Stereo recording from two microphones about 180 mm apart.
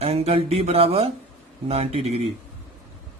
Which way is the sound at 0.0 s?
35° right (ahead or behind).